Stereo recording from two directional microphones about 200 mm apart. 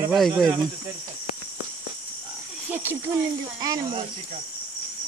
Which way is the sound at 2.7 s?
10° right (ahead or behind).